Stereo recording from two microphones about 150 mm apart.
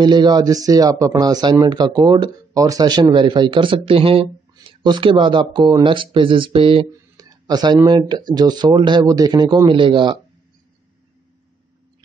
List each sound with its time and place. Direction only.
0.0 s speech: 30° right (ahead or behind)
7.2 s speech: 25° right (ahead or behind)